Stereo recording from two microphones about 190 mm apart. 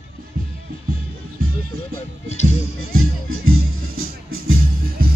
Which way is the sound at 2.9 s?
90° right.